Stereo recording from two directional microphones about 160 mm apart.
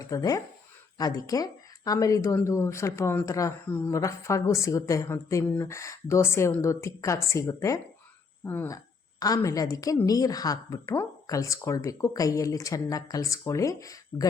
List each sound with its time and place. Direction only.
0.0 s a woman's voice: 20° left (ahead or behind)